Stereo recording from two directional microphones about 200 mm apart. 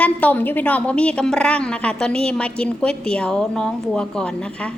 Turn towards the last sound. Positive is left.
turn(degrees=5)  # may be behind; listen again after turning